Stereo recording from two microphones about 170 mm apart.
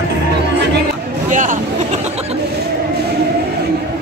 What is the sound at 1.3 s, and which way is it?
Speech, 50° right (ahead or behind).